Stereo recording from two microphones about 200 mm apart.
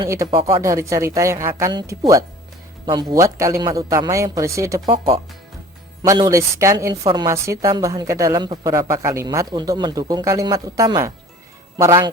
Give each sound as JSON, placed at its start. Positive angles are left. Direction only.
{"t": 0.0, "sound": "a woman's voice", "side_deg": -20}